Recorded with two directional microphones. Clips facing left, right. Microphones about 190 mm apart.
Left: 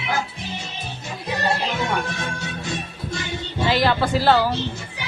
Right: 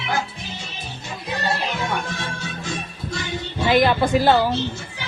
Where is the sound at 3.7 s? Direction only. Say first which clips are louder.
Right 3 dB; 20° right (ahead or behind).